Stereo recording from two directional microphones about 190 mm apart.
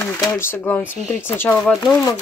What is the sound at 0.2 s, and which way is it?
Speech, 15° left (ahead or behind).